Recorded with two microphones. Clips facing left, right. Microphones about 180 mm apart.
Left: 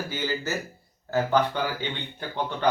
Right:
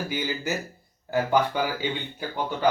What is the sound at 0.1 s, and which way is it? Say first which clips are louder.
Speech: right 1 dB; 15° right (ahead or behind).